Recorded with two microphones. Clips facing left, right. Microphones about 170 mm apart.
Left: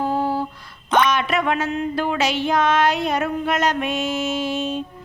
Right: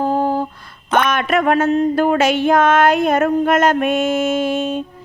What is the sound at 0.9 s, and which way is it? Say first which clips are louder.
Mantra: right 3 dB; 55° right (ahead or behind).